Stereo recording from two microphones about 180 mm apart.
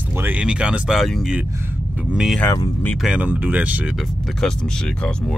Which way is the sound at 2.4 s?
20° left (ahead or behind).